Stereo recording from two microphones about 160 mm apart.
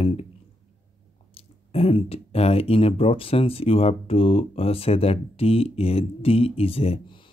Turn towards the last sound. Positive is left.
turn(degrees=35)  # may be behind; listen again after turning